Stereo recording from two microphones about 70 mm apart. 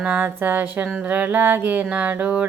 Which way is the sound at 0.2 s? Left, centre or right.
Right.